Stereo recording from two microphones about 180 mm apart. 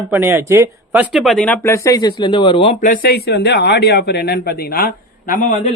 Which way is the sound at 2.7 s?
50° left (ahead or behind).